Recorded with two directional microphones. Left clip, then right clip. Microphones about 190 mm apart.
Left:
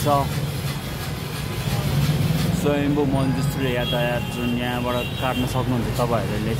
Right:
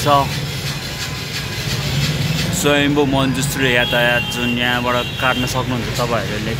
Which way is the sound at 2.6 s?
5° right (ahead or behind).